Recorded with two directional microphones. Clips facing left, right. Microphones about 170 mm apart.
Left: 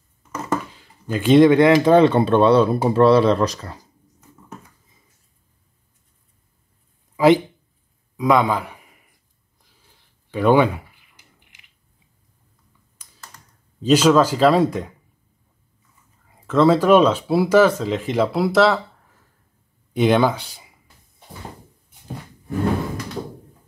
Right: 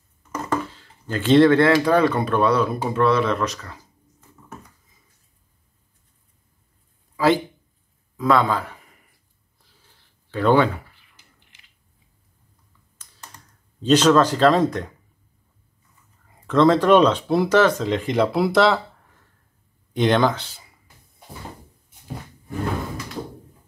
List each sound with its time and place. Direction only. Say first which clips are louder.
0.5 s speech: left 1 dB; 10° left (ahead or behind); by 3.8 s 30° left (ahead or behind)
8.2 s a man's voice: left 2 dB; 15° left (ahead or behind)
10.3 s a sound: left 2 dB; 10° left (ahead or behind)
13.0 s computer keyboard: even; 10° left (ahead or behind)
13.7 s speech: left 1 dB; 10° left (ahead or behind)
16.3 s speech: left 1 dB; centre (ahead or behind)